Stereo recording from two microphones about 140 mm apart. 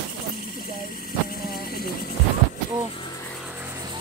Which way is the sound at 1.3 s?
90° left.